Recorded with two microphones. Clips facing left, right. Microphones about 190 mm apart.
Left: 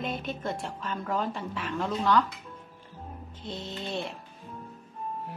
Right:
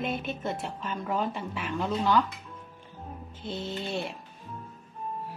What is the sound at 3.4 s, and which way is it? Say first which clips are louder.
Speech: right 3 dB; 5° right (ahead or behind).